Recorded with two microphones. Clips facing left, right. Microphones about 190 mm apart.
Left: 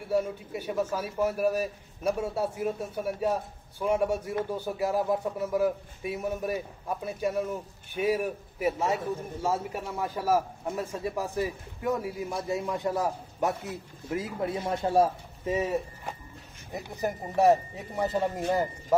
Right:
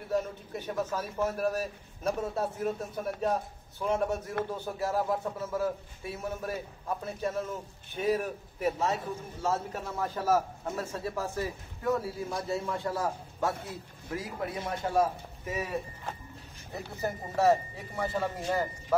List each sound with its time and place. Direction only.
0.1 s a man's voice: 10° left (ahead or behind)